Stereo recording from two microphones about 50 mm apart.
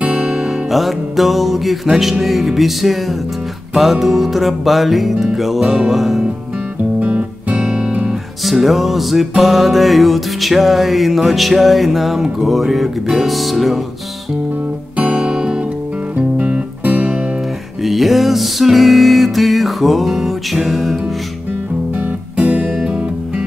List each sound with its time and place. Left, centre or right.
0.0 s music: right
0.3 s music: centre
7.0 s music: right
8.1 s music: centre
15.0 s music: right
16.2 s music: right
17.8 s music: centre
21.9 s music: right